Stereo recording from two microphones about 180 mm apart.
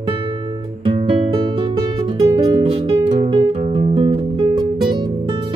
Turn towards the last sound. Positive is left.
turn(degrees=-25)  # may be behind; listen again after turning